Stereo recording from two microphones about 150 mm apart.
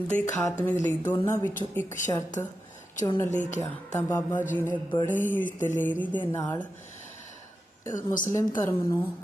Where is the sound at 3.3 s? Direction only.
55° left (ahead or behind).